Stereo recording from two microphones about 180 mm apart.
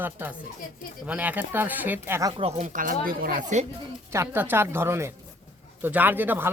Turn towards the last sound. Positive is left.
turn(degrees=-10)  # may be behind; listen again after turning